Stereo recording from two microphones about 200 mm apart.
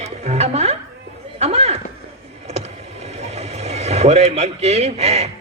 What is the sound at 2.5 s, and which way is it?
Vehicle, 35° right (ahead or behind).